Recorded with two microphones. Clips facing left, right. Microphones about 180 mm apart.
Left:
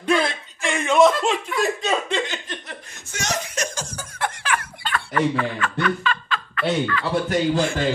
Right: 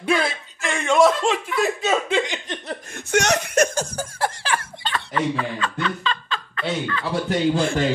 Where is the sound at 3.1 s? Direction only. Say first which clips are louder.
Right 8 dB; 65° right (ahead or behind).